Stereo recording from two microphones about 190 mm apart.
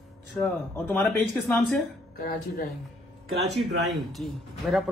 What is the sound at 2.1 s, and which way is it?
Speech, 50° left (ahead or behind).